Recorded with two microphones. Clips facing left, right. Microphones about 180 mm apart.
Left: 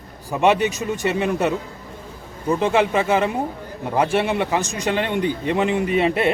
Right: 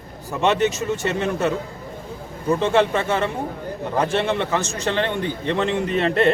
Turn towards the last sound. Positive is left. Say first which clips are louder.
# left 1 dB
turn(degrees=10)  # may be behind; listen again after turning